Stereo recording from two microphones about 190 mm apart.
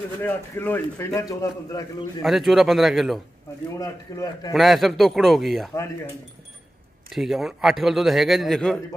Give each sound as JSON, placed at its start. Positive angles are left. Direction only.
{"t": 0.2, "sound": "a man's voice", "side_deg": 10}
{"t": 2.2, "sound": "a man's voice", "side_deg": 0}
{"t": 3.8, "sound": "a man's voice", "side_deg": 20}
{"t": 4.6, "sound": "a man's voice", "side_deg": 0}
{"t": 7.1, "sound": "a man's voice", "side_deg": 0}